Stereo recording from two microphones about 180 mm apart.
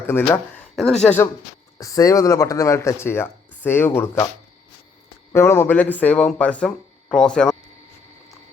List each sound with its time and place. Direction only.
0.0 s speech: 10° left (ahead or behind)
5.3 s speech: 15° left (ahead or behind)